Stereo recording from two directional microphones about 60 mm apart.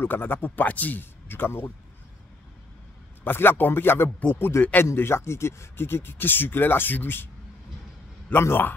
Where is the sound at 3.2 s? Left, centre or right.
Left.